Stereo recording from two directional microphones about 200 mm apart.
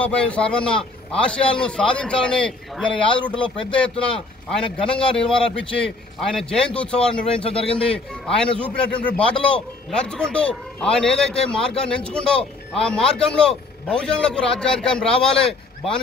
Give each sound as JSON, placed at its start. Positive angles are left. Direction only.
{"t": 0.0, "sound": "a man's voice", "side_deg": 5}
{"t": 4.9, "sound": "a man's voice", "side_deg": 5}
{"t": 7.4, "sound": "a man's voice", "side_deg": 30}
{"t": 7.7, "sound": "a man's voice", "side_deg": 5}